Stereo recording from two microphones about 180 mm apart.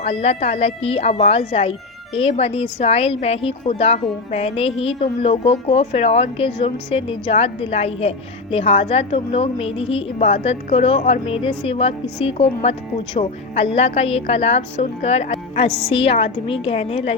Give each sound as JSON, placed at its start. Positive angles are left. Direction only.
{"t": 0.0, "sound": "a woman's voice", "side_deg": 35}